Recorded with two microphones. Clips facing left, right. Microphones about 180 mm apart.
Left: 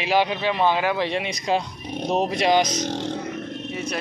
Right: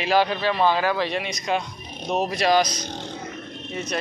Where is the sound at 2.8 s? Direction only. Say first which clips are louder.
Left 7 dB; 90° left.